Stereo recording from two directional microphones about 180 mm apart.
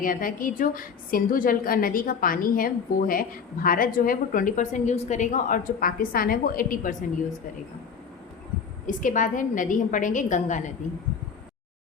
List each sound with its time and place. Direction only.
0.0 s a woman's voice: 50° left (ahead or behind)
8.9 s a woman's voice: 45° left (ahead or behind)